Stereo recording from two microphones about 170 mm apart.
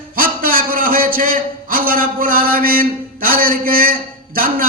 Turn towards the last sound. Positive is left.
turn(degrees=-55)  # may be behind; listen again after turning